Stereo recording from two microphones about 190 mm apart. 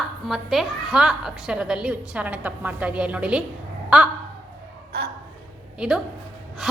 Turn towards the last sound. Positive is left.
turn(degrees=-5)  # may be behind; listen again after turning